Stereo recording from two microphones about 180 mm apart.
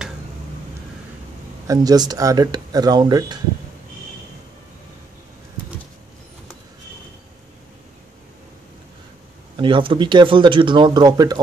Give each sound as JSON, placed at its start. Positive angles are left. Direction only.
{"t": 1.7, "sound": "speech", "side_deg": -20}
{"t": 9.6, "sound": "speech", "side_deg": -25}